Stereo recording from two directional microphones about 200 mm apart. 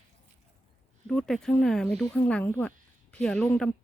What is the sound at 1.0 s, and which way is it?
Speech, 5° left (ahead or behind).